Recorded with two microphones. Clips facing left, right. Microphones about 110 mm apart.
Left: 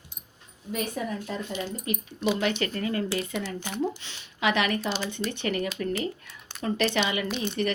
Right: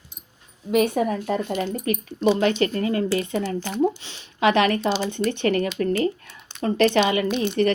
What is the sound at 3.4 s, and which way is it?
Speech, 40° right (ahead or behind).